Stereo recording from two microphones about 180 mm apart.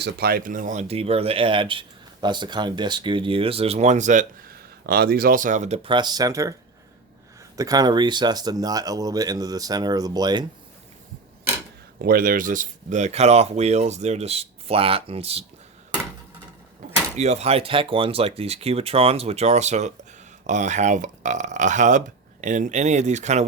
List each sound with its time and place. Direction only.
0.0 s speech: 60° right (ahead or behind); by 6.5 s 20° right (ahead or behind)
7.5 s speech: 20° right (ahead or behind)
12.0 s speech: 50° right (ahead or behind); by 15.4 s 35° right (ahead or behind)
17.2 s speech: 35° right (ahead or behind)